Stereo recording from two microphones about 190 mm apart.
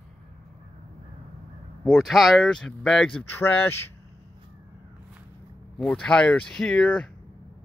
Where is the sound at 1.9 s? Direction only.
Centre (ahead or behind).